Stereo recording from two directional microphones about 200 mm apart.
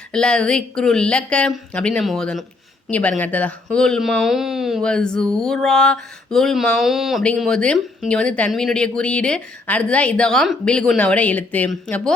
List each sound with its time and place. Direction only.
0.1 s speech: 5° left (ahead or behind)